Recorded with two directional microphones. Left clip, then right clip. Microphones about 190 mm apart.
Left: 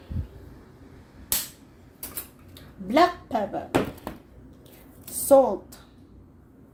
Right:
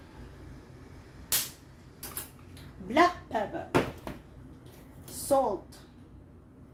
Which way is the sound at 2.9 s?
40° left (ahead or behind).